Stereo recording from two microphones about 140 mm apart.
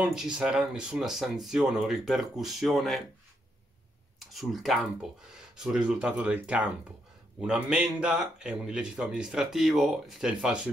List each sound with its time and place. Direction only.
0.0 s speech: 5° right (ahead or behind)
4.2 s speech: centre (ahead or behind)